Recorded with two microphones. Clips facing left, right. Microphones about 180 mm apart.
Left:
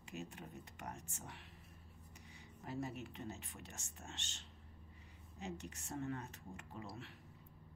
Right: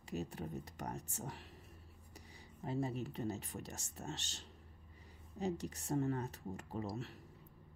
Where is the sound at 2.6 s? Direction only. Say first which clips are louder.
Right 5 dB; 30° right (ahead or behind).